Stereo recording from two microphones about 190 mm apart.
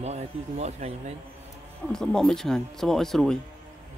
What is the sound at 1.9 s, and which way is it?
Speech, 5° left (ahead or behind).